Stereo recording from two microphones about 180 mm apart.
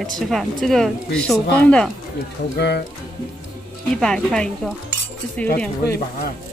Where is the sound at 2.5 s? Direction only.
65° left (ahead or behind).